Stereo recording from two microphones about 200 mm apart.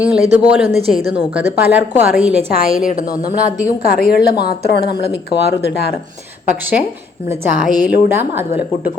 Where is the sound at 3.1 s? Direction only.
45° left (ahead or behind).